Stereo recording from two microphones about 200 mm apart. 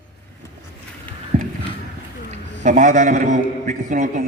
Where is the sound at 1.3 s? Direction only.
40° right (ahead or behind).